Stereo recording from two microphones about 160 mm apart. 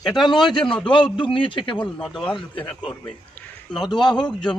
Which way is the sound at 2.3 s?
30° left (ahead or behind).